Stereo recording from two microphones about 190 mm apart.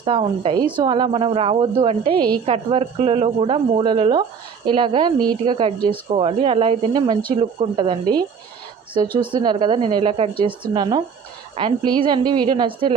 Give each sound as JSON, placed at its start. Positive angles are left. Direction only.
{"t": 0.0, "sound": "a woman's voice", "side_deg": -25}
{"t": 9.3, "sound": "a woman's voice", "side_deg": -25}